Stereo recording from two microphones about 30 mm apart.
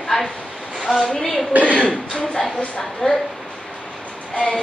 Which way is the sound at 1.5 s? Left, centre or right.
Right.